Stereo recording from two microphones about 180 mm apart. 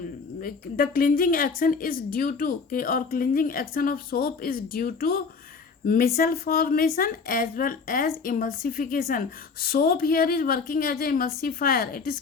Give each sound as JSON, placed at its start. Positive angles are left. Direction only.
{"t": 0.4, "sound": "a woman's voice", "side_deg": 50}